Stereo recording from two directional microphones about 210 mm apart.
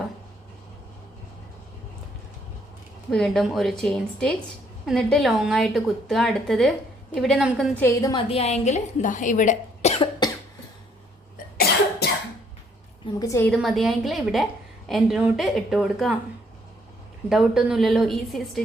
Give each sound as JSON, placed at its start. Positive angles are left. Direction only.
{"t": 3.1, "sound": "a woman's voice", "side_deg": 0}
{"t": 7.8, "sound": "a woman's voice", "side_deg": 15}
{"t": 8.3, "sound": "speech", "side_deg": 30}
{"t": 11.5, "sound": "cough", "side_deg": 50}
{"t": 13.1, "sound": "a woman's voice", "side_deg": 15}
{"t": 13.5, "sound": "a woman's voice", "side_deg": 0}
{"t": 17.2, "sound": "a woman's voice", "side_deg": 0}